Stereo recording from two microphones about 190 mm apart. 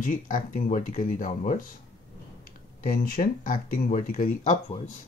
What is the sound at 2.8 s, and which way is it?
Speech, 45° left (ahead or behind).